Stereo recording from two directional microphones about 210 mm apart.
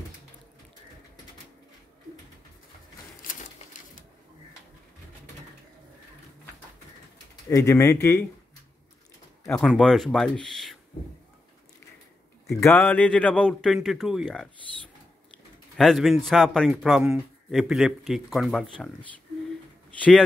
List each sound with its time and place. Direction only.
3.2 s a sound: 40° left (ahead or behind)
7.4 s speech: 15° left (ahead or behind)
9.5 s a man's voice: 5° left (ahead or behind)
12.5 s a man's voice: 10° left (ahead or behind)
15.7 s a man's voice: centre (ahead or behind)
20.0 s a man's voice: 5° left (ahead or behind)